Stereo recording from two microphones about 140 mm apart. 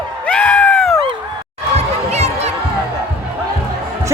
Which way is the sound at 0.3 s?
10° left (ahead or behind).